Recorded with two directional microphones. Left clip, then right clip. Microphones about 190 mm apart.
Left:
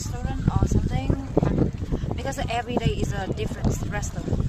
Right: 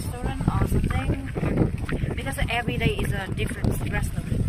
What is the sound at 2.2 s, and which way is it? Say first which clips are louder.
Speech: even; 35° left (ahead or behind).